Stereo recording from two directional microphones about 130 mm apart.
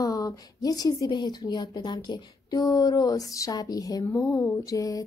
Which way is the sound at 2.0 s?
35° left (ahead or behind).